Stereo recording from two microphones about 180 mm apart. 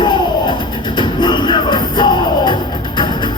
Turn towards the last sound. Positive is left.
turn(degrees=25)  # may be behind; listen again after turning